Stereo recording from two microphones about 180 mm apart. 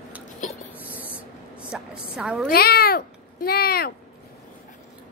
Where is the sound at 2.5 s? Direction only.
60° left (ahead or behind).